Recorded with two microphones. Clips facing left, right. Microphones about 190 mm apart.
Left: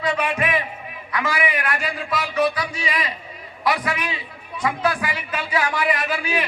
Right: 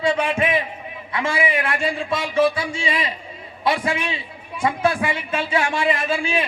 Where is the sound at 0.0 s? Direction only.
25° right (ahead or behind).